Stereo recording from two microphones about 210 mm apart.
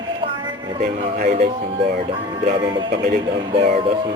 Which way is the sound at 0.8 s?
45° right (ahead or behind).